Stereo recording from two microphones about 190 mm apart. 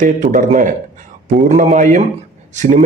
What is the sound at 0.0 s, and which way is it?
A man's voice, 45° right (ahead or behind).